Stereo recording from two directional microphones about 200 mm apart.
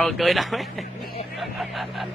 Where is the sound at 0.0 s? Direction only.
Centre (ahead or behind).